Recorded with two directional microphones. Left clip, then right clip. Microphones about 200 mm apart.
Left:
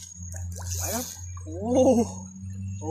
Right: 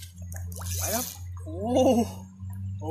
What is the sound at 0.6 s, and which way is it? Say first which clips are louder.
Squish: right 1 dB; 10° left (ahead or behind).